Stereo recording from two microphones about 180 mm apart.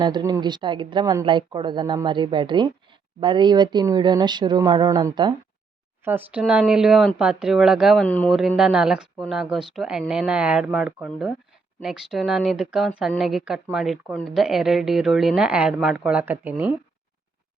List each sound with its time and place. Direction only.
0.0 s speech: 20° right (ahead or behind)
6.1 s speech: 10° right (ahead or behind)
8.0 s speech: 10° left (ahead or behind)
8.4 s speech: 5° right (ahead or behind)